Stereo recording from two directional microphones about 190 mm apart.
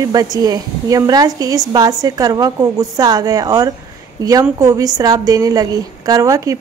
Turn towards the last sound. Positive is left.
turn(degrees=-15)  # may be behind; listen again after turning